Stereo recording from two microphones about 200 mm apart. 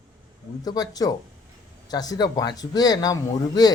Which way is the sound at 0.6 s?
20° left (ahead or behind).